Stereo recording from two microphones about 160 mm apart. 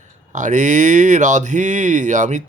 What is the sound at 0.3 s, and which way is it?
Speech, 50° right (ahead or behind).